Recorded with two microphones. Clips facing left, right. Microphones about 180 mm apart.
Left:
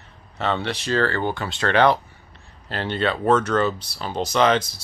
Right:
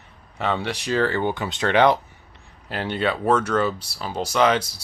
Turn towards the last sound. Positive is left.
turn(degrees=-10)  # may be behind; listen again after turning